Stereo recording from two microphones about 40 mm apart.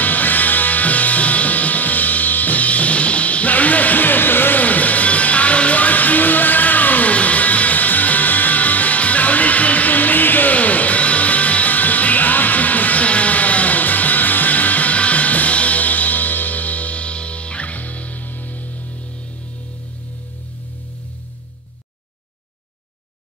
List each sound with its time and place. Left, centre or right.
0.0 s music: left